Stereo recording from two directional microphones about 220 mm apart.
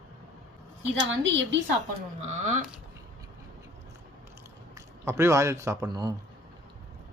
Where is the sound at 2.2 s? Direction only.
30° right (ahead or behind).